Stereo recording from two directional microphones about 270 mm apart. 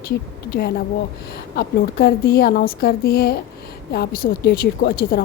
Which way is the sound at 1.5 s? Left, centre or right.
Left.